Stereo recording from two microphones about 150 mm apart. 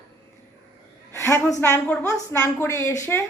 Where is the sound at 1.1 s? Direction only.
20° left (ahead or behind).